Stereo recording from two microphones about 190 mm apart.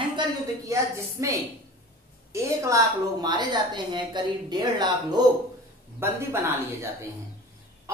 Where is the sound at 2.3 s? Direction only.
15° right (ahead or behind).